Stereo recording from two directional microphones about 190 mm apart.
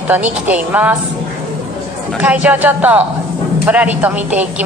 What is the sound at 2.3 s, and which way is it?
Speech, 10° right (ahead or behind).